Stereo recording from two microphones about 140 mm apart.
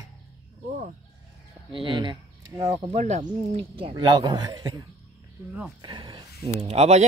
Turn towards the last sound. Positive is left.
turn(degrees=-50)  # may be behind; listen again after turning